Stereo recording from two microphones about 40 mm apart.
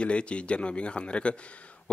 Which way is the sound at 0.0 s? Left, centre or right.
Left.